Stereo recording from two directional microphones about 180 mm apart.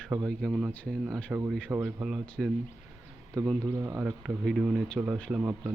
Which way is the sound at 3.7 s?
15° right (ahead or behind).